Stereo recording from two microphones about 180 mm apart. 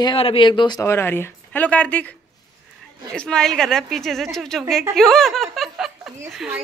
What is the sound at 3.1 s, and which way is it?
A woman's voice, 5° left (ahead or behind).